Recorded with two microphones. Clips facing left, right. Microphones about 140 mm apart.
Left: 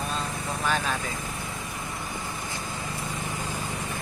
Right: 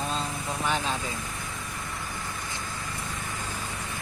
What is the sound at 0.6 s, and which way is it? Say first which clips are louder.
Speech: left 1 dB; 20° right (ahead or behind).